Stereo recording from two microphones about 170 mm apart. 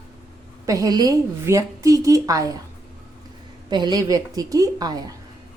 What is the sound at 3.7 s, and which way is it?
A woman's voice, 25° right (ahead or behind).